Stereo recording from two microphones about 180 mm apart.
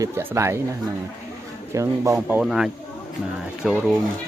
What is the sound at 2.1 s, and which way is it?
Speech, 5° right (ahead or behind).